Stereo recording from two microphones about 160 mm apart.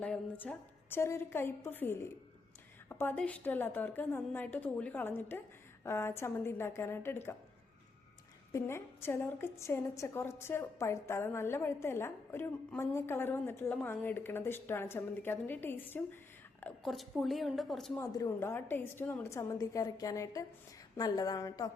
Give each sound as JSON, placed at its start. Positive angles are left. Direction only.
{"t": 0.0, "sound": "a woman's voice", "side_deg": 10}
{"t": 8.5, "sound": "a woman's voice", "side_deg": 15}
{"t": 17.9, "sound": "a woman's voice", "side_deg": 20}